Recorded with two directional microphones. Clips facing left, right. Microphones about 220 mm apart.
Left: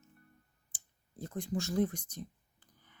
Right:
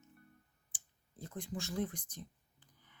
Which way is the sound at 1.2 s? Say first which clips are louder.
Left 6 dB; 40° left (ahead or behind).